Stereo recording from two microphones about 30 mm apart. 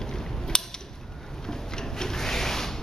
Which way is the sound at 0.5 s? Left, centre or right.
Left.